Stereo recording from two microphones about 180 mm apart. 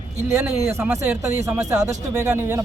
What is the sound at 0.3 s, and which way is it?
A man's voice, 15° right (ahead or behind).